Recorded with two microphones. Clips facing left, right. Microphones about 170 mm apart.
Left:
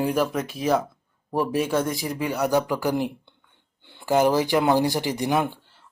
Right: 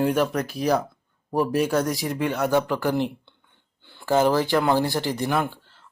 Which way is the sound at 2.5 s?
10° left (ahead or behind).